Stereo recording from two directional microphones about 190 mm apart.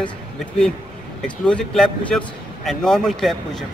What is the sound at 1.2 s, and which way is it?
Speech, 5° left (ahead or behind).